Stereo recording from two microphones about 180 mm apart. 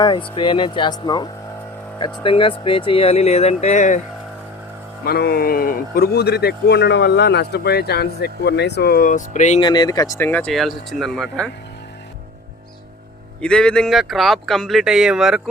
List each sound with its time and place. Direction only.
0.0 s speech: 25° left (ahead or behind); by 4.0 s 40° left (ahead or behind)
5.0 s speech: 60° left (ahead or behind); by 9.6 s 45° left (ahead or behind)
9.6 s speech: 25° left (ahead or behind); by 11.5 s 5° left (ahead or behind)
13.4 s speech: 5° left (ahead or behind)